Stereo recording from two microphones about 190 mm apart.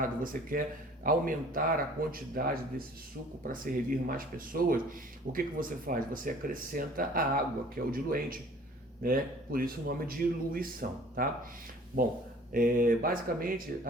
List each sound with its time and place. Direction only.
0.0 s speech: 45° right (ahead or behind)
12.5 s speech: 45° right (ahead or behind)